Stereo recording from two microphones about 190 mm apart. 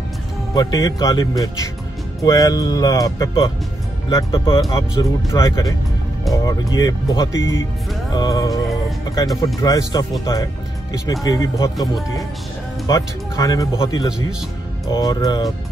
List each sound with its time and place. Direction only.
0.6 s speech: 20° left (ahead or behind)
4.5 s speech: 15° left (ahead or behind)